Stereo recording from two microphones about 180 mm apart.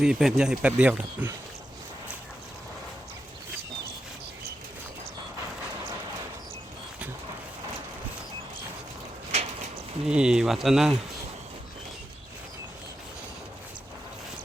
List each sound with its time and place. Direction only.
0.0 s speech: centre (ahead or behind)
9.3 s a sound: 35° right (ahead or behind)
10.0 s speech: 5° right (ahead or behind)